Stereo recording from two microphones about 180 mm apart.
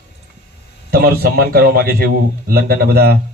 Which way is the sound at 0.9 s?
60° right (ahead or behind).